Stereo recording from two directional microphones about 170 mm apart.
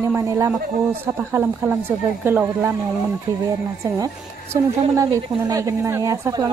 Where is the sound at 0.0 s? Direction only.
15° right (ahead or behind).